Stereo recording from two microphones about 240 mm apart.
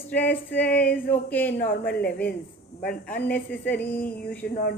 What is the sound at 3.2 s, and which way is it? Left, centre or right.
Speech, left.